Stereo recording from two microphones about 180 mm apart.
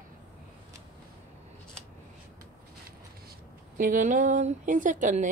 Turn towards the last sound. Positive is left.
turn(degrees=-45)  # may be behind; listen again after turning